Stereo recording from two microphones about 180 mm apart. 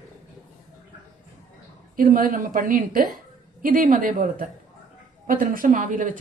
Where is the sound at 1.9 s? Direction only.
50° right (ahead or behind).